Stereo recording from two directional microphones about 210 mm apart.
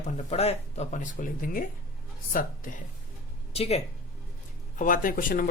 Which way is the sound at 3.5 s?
30° left (ahead or behind).